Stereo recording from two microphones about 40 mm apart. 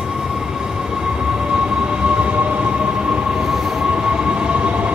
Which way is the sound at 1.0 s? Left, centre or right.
Centre.